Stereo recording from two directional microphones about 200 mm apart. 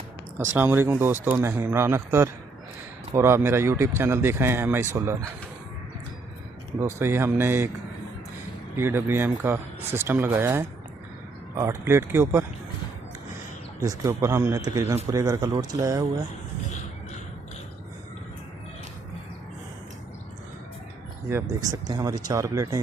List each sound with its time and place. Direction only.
0.3 s speech: 10° right (ahead or behind)
6.7 s speech: 10° right (ahead or behind)
8.7 s speech: 10° right (ahead or behind)
13.8 s speech: 15° right (ahead or behind)
21.2 s speech: 15° right (ahead or behind)